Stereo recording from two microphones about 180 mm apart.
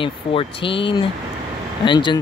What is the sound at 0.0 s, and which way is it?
Speech, 30° left (ahead or behind).